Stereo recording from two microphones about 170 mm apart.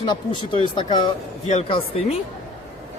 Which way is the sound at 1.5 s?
35° left (ahead or behind).